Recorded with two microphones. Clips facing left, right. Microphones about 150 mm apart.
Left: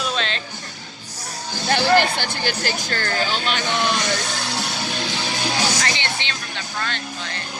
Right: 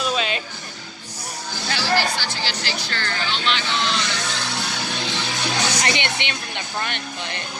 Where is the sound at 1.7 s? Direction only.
55° left (ahead or behind).